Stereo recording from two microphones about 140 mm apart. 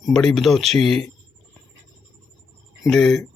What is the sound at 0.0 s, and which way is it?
Speech, 5° left (ahead or behind).